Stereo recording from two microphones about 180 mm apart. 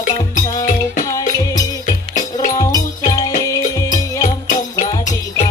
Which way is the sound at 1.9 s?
45° left (ahead or behind).